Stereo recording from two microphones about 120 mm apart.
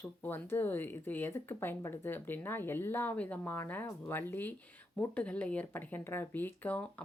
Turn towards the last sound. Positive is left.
turn(degrees=10)  # may be behind; listen again after turning